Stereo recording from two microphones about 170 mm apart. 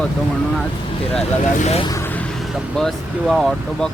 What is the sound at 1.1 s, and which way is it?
Speech, 40° left (ahead or behind).